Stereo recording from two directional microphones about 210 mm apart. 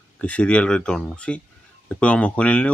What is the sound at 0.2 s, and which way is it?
Speech, 5° left (ahead or behind).